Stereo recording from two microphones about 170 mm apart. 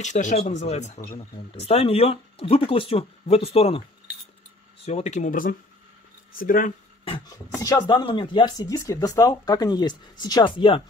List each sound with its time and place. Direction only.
0.0 s speech: 45° left (ahead or behind)
4.8 s speech: 40° left (ahead or behind); by 6.7 s 55° left (ahead or behind)
7.1 s speech: 20° left (ahead or behind)